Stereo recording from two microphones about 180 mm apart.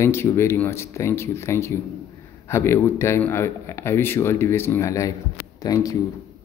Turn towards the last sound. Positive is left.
turn(degrees=20)  # may be behind; listen again after turning